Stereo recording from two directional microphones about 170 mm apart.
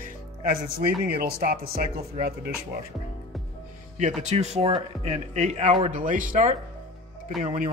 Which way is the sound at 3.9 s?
45° right (ahead or behind).